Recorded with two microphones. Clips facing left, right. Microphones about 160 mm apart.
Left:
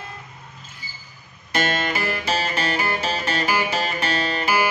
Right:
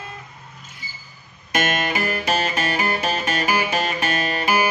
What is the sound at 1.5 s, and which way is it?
Music, 20° right (ahead or behind).